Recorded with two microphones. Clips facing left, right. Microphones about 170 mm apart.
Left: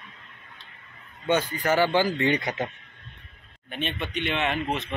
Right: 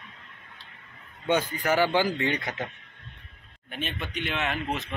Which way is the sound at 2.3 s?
15° left (ahead or behind).